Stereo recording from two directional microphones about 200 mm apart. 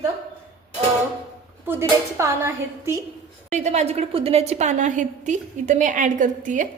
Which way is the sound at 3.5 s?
35° right (ahead or behind).